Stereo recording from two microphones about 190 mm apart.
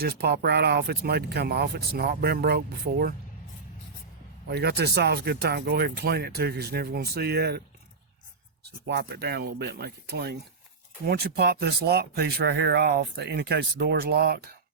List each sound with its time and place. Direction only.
0.0 s speech: 55° right (ahead or behind)
4.4 s speech: 60° right (ahead or behind)
8.9 s speech: 60° right (ahead or behind)